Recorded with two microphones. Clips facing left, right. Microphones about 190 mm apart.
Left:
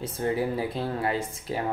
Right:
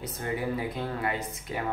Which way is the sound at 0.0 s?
30° left (ahead or behind).